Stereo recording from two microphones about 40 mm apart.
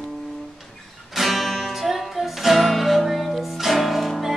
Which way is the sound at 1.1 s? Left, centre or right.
Centre.